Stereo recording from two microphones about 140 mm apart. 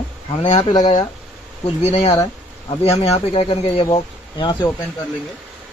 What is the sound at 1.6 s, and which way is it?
Speech, 50° left (ahead or behind).